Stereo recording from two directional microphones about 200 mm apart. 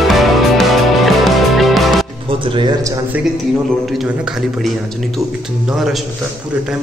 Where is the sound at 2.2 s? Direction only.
25° right (ahead or behind).